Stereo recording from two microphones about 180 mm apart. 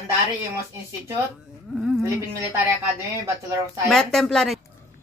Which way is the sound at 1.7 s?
5° right (ahead or behind).